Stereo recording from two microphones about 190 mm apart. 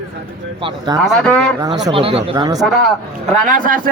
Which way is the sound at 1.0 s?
5° left (ahead or behind).